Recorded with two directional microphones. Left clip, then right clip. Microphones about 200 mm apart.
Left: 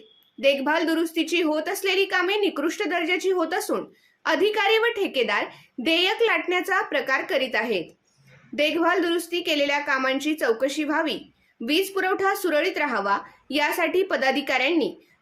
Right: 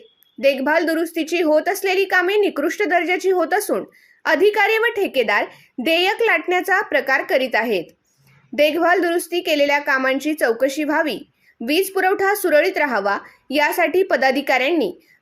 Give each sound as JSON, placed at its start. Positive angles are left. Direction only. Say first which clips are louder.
{"t": 0.4, "sound": "a woman's voice", "louder": "right 4 dB", "side_deg": -25}